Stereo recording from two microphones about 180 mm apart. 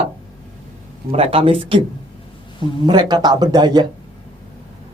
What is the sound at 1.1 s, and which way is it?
Speech, 30° right (ahead or behind).